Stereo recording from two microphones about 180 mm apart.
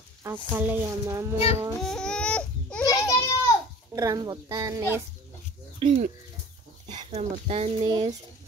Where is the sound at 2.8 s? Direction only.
20° left (ahead or behind).